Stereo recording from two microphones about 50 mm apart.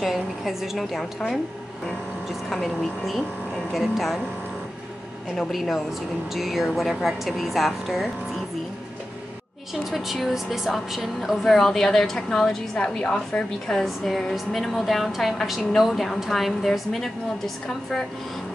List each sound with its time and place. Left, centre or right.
0.0 s a woman's voice: centre
2.5 s speech: centre
6.3 s speech: centre
9.8 s a woman's voice: centre
13.7 s speech: centre